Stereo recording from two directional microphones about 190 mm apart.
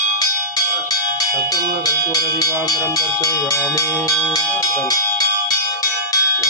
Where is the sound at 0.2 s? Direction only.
20° left (ahead or behind).